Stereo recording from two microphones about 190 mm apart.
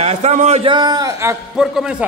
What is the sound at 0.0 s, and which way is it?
A man's voice, 35° right (ahead or behind).